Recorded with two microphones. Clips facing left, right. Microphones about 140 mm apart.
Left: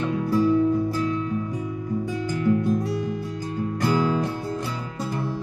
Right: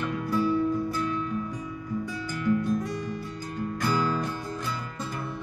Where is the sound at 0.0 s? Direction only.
30° left (ahead or behind).